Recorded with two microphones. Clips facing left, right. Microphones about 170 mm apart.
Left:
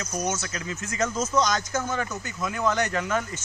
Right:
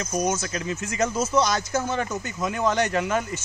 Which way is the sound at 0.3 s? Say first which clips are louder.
Right 4 dB; 30° right (ahead or behind).